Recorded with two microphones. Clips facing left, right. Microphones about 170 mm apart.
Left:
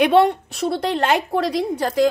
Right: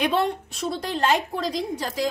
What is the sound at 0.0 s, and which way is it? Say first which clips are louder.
A woman's voice: left 8 dB; 70° left (ahead or behind).